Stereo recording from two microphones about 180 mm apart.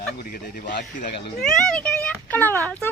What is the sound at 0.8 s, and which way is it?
Speech, 45° left (ahead or behind).